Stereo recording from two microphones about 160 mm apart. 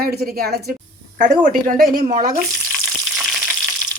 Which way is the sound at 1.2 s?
55° right (ahead or behind).